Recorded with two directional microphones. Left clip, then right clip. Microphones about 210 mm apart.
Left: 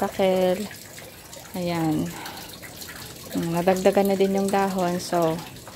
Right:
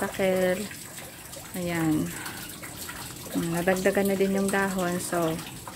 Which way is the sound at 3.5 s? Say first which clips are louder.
Left 5 dB; 20° left (ahead or behind).